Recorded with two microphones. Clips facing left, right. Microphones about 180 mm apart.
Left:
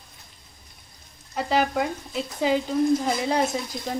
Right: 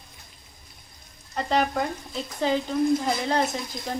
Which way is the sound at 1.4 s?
5° left (ahead or behind).